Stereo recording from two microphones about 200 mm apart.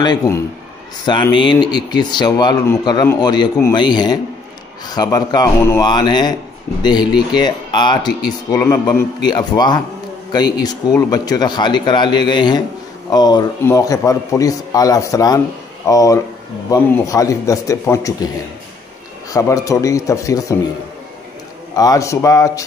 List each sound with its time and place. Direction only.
0.0 s a man's voice: 20° left (ahead or behind)
19.3 s a man's voice: 15° left (ahead or behind)
21.7 s a man's voice: 15° left (ahead or behind)